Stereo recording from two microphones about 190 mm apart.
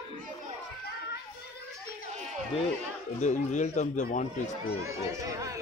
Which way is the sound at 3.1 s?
40° left (ahead or behind).